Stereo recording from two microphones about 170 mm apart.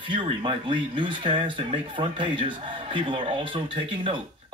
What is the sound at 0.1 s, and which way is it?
Speech, 30° right (ahead or behind).